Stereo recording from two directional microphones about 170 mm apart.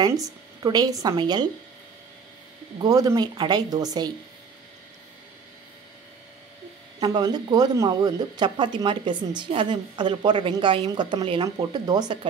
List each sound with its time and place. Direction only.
0.0 s speech: 20° right (ahead or behind)
2.8 s speech: 20° right (ahead or behind)
7.0 s speech: 25° right (ahead or behind)